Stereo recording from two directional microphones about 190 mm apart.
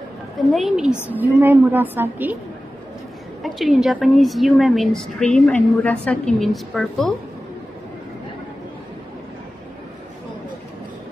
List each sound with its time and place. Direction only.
0.5 s a woman's voice: centre (ahead or behind)
3.4 s a woman's voice: centre (ahead or behind)